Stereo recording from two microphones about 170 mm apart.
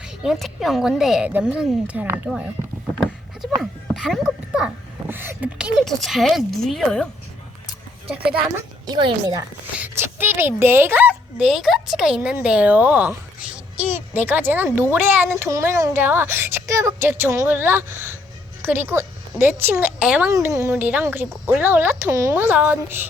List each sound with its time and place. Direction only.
0.0 s speech: 5° right (ahead or behind)
3.9 s speech: centre (ahead or behind)
8.3 s speech: 5° right (ahead or behind)
8.9 s a woman's voice: 25° right (ahead or behind)
9.7 s a woman's voice: 10° right (ahead or behind)
20.3 s a woman's voice: 20° right (ahead or behind)